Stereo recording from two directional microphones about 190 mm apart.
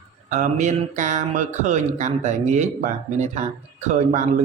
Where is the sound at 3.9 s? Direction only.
40° right (ahead or behind).